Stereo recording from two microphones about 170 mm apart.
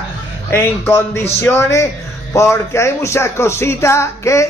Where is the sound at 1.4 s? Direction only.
15° left (ahead or behind).